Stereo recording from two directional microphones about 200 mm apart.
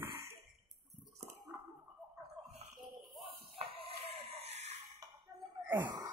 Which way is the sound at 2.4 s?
25° right (ahead or behind).